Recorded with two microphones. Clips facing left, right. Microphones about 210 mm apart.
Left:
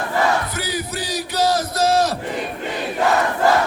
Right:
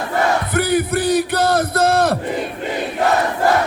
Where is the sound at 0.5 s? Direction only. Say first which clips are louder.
Right 9 dB; 55° right (ahead or behind).